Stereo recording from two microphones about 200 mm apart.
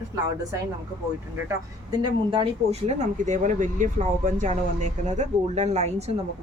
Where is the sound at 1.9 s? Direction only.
25° right (ahead or behind).